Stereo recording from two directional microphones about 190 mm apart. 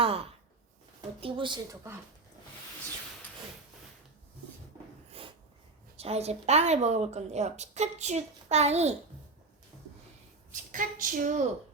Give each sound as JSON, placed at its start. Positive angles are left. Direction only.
{"t": 0.0, "sound": "sigh", "side_deg": -30}
{"t": 1.2, "sound": "speech", "side_deg": -25}
{"t": 5.2, "sound": "snort", "side_deg": -30}
{"t": 6.0, "sound": "a woman's voice", "side_deg": -35}
{"t": 10.5, "sound": "a woman's voice", "side_deg": -45}